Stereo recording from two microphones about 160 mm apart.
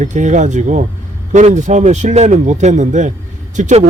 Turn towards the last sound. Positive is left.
turn(degrees=-50)  # may be behind; listen again after turning